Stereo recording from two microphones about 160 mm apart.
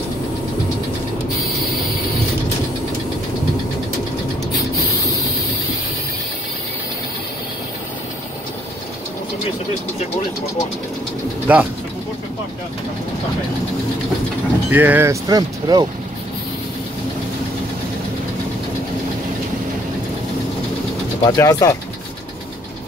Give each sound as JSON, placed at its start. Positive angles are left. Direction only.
{"t": 11.5, "sound": "speech", "side_deg": -10}
{"t": 14.7, "sound": "speech", "side_deg": -10}
{"t": 21.2, "sound": "speech", "side_deg": 25}